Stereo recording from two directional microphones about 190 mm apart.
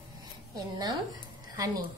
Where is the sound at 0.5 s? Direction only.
20° right (ahead or behind).